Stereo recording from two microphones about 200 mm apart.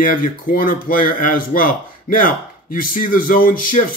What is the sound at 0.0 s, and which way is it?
Speech, 45° left (ahead or behind).